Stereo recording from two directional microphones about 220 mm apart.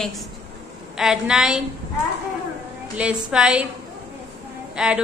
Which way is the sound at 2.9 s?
5° right (ahead or behind).